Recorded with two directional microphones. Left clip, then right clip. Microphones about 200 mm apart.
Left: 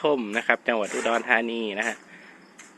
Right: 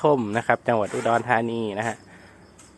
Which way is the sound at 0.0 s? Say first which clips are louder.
Right 3 dB; 20° right (ahead or behind).